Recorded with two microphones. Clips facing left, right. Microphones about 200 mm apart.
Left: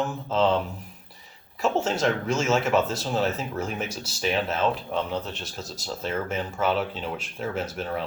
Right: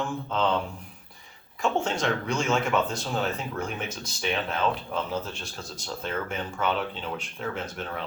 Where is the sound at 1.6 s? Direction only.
5° left (ahead or behind).